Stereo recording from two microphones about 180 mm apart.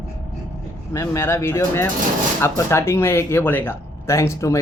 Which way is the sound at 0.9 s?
15° left (ahead or behind).